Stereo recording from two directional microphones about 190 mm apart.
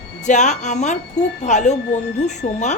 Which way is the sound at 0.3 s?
40° left (ahead or behind).